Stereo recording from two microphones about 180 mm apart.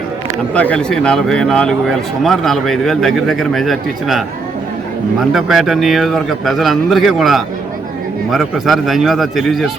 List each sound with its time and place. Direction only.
0.5 s speech: 5° left (ahead or behind)
5.3 s speech: centre (ahead or behind)